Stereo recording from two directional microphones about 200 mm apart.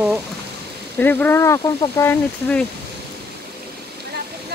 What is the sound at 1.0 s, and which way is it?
Speech, 10° left (ahead or behind).